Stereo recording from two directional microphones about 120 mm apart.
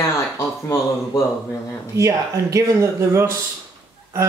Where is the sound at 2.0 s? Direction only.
25° right (ahead or behind).